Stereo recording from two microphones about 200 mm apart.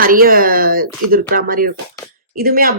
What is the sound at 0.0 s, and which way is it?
Speech, 45° right (ahead or behind).